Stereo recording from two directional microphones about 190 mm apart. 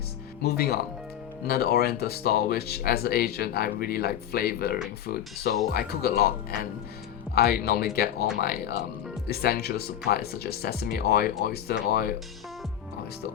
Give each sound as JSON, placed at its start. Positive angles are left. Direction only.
{"t": 0.4, "sound": "speech", "side_deg": 55}
{"t": 7.3, "sound": "speech", "side_deg": 55}